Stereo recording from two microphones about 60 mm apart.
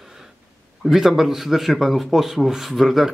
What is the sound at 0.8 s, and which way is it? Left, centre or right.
Speech, centre.